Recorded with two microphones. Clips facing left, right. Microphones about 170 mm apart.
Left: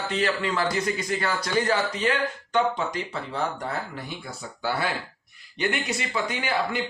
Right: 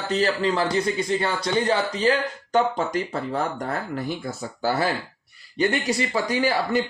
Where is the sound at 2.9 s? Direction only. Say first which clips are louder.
Right 5 dB; 45° right (ahead or behind).